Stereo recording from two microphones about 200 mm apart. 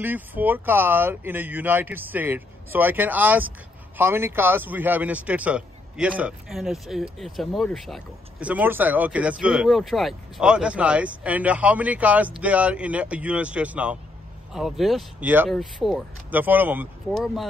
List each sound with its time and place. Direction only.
0.0 s a man's voice: 10° right (ahead or behind)